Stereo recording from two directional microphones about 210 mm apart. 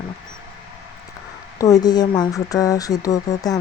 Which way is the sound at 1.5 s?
15° left (ahead or behind).